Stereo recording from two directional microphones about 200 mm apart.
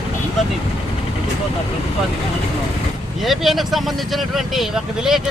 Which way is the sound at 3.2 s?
Centre (ahead or behind).